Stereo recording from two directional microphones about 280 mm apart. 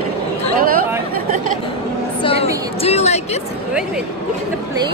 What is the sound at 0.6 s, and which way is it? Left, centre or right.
Speech, right.